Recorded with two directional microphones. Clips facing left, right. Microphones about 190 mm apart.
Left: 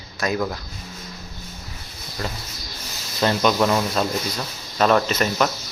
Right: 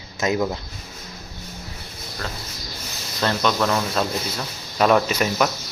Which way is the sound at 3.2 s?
10° left (ahead or behind).